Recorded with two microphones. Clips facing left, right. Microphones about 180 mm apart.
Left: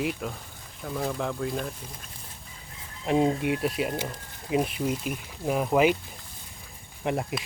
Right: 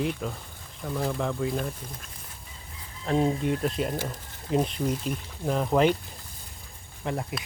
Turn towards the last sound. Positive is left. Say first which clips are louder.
# left 3 dB
turn(degrees=20)  # may be behind; listen again after turning